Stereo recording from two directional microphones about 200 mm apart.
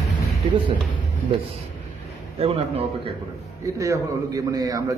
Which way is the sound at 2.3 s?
30° right (ahead or behind).